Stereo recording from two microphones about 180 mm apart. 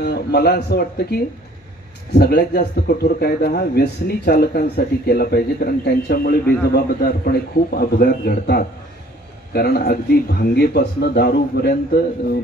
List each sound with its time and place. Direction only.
0.0 s speech: 65° left (ahead or behind)